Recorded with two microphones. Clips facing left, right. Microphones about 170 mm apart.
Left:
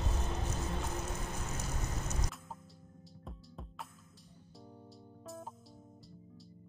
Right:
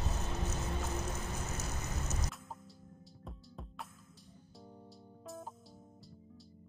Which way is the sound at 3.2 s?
Centre (ahead or behind).